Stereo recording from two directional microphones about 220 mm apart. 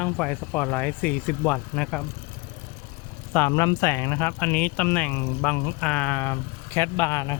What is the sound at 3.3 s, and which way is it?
Speech, 10° left (ahead or behind).